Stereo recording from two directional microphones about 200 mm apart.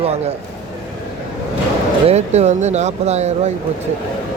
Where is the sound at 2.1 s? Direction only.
35° right (ahead or behind).